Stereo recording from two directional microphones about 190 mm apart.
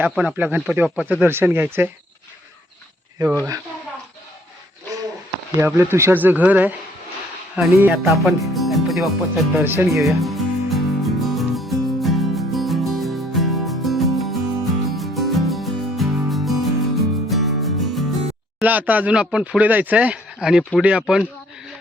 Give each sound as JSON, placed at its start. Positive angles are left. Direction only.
{"t": 0.0, "sound": "speech", "side_deg": -5}
{"t": 3.2, "sound": "speech", "side_deg": -20}
{"t": 5.5, "sound": "speech", "side_deg": -15}
{"t": 7.5, "sound": "music", "side_deg": -10}
{"t": 9.6, "sound": "speech", "side_deg": -10}
{"t": 10.0, "sound": "music", "side_deg": 0}
{"t": 18.6, "sound": "speech", "side_deg": -10}
{"t": 20.7, "sound": "music", "side_deg": -5}